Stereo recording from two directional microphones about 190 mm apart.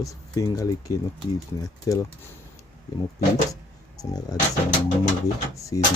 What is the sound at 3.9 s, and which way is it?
Speech, 20° left (ahead or behind).